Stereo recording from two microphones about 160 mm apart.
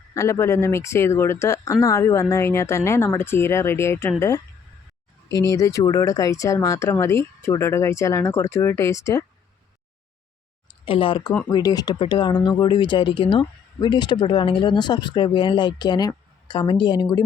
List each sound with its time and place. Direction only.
0.1 s speech: 20° left (ahead or behind)
5.4 s speech: 20° left (ahead or behind)
10.8 s speech: 35° left (ahead or behind)